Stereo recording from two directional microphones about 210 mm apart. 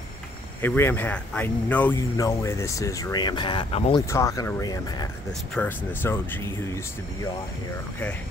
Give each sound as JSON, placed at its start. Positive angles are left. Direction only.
{"t": 0.6, "sound": "speech", "side_deg": 10}
{"t": 4.0, "sound": "speech", "side_deg": 15}
{"t": 5.5, "sound": "speech", "side_deg": 10}